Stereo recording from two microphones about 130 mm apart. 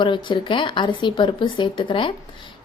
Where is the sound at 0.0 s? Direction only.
40° left (ahead or behind).